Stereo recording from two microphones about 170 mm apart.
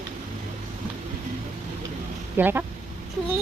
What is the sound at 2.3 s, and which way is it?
Speech, 10° right (ahead or behind).